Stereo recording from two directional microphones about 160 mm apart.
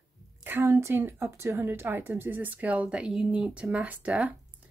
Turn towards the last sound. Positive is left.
turn(degrees=-10)  # may be behind; listen again after turning